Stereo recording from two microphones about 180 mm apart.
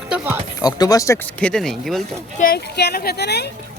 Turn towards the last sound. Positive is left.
turn(degrees=65)  # may be behind; listen again after turning